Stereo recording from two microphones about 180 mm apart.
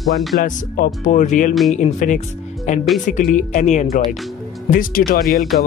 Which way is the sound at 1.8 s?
45° left (ahead or behind).